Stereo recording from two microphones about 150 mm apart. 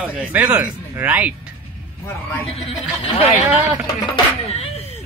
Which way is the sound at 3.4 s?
10° right (ahead or behind).